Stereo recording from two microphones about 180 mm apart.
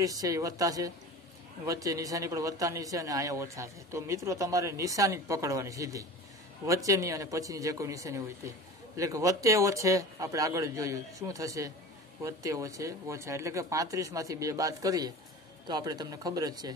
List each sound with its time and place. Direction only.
0.0 s a man's voice: 20° right (ahead or behind)